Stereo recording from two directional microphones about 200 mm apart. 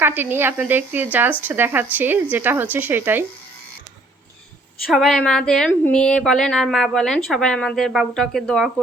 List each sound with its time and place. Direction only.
0.0 s speech: 10° right (ahead or behind)
4.9 s speech: centre (ahead or behind)